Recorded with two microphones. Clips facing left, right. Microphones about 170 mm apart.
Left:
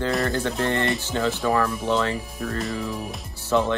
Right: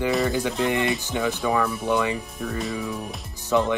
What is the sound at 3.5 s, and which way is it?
Speech, 15° right (ahead or behind).